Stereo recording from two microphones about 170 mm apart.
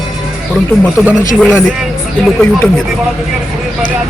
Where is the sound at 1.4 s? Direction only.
15° left (ahead or behind).